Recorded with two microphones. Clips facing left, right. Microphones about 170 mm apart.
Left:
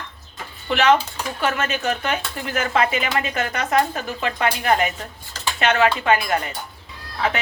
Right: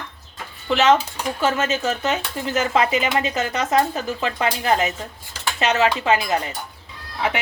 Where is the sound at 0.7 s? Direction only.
20° right (ahead or behind).